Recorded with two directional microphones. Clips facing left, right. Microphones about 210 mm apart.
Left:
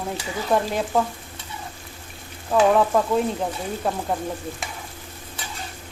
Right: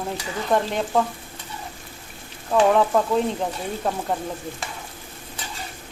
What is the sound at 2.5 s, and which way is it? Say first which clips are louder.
Speech: even; centre (ahead or behind).